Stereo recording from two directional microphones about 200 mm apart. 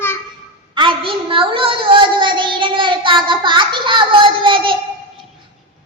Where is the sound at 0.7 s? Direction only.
25° right (ahead or behind).